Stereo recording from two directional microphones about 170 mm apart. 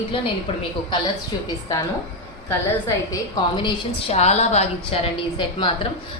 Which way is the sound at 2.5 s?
15° left (ahead or behind).